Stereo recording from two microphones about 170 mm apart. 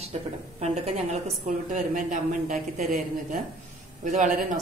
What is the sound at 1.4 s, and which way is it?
A woman's voice, 45° right (ahead or behind).